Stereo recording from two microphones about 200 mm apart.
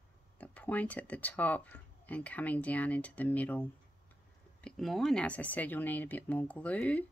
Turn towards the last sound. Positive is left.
turn(degrees=5)  # may be behind; listen again after turning